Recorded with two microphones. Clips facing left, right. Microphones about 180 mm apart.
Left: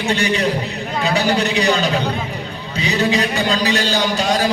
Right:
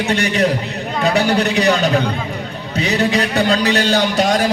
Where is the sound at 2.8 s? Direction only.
60° right (ahead or behind).